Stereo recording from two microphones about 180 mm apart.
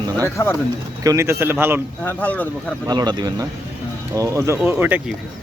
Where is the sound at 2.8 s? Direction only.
25° right (ahead or behind).